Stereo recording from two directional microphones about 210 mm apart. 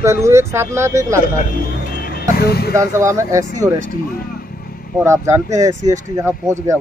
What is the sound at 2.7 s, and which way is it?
Speech, 15° right (ahead or behind).